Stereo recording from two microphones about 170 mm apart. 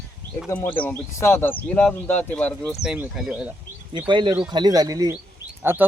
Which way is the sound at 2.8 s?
5° right (ahead or behind).